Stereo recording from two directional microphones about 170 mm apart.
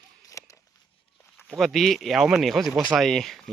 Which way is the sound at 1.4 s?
Centre (ahead or behind).